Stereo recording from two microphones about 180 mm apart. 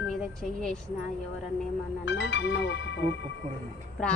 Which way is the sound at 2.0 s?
70° left (ahead or behind).